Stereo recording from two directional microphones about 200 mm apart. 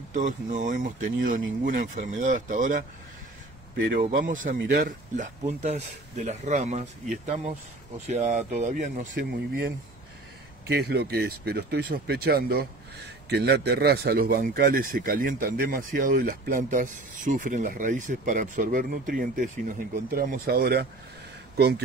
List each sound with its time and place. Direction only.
0.1 s speech: 40° right (ahead or behind)
4.0 s speech: 40° right (ahead or behind)
10.7 s speech: 55° right (ahead or behind)